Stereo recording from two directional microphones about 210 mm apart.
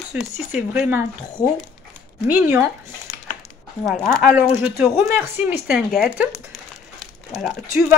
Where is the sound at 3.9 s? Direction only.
5° left (ahead or behind).